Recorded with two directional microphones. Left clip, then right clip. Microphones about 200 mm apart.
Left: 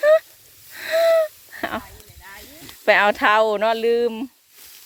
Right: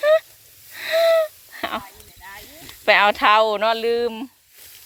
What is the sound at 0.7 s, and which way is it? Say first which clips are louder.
Wheeze: even; 25° left (ahead or behind).